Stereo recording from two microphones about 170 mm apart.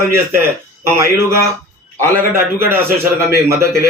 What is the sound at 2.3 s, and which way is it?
A man's voice, 15° right (ahead or behind).